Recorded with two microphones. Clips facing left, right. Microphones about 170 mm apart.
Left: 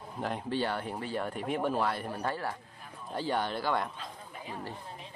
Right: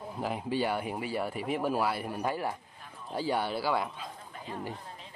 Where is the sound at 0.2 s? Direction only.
5° right (ahead or behind).